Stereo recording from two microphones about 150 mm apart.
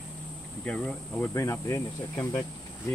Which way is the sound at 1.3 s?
20° left (ahead or behind).